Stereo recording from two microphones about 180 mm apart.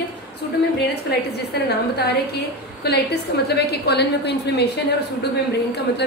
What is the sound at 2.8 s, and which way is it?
A woman's voice, 60° left (ahead or behind).